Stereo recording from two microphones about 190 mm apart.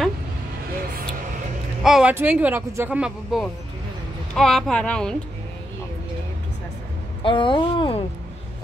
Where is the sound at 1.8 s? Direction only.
5° right (ahead or behind).